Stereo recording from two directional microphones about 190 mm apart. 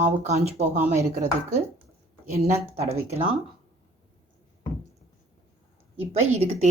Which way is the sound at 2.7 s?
35° right (ahead or behind).